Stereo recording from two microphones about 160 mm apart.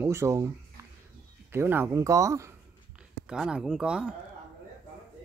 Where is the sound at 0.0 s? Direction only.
15° right (ahead or behind).